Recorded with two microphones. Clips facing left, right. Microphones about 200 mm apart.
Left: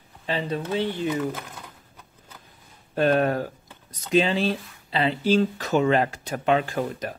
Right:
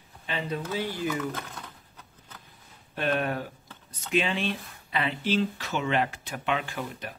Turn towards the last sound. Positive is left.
turn(degrees=40)  # may be behind; listen again after turning